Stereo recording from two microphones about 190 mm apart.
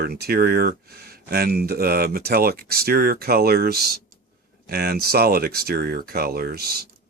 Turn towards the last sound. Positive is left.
turn(degrees=-55)  # may be behind; listen again after turning